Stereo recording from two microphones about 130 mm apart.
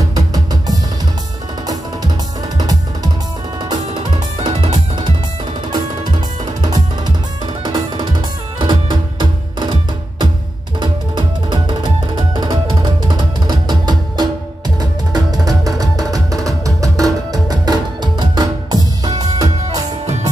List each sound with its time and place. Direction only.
0.1 s music: 30° right (ahead or behind)
2.5 s music: 30° right (ahead or behind)
6.6 s music: 30° right (ahead or behind)